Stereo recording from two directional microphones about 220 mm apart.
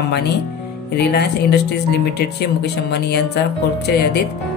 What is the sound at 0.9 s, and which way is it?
Speech, 50° left (ahead or behind).